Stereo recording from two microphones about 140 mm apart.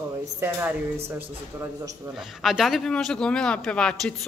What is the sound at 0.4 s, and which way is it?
Speech, 15° right (ahead or behind).